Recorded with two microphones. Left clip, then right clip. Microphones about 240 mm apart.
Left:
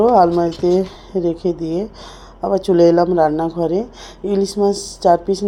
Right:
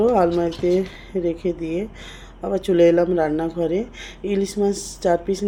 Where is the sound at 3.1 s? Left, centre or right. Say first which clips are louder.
Left 6 dB; centre.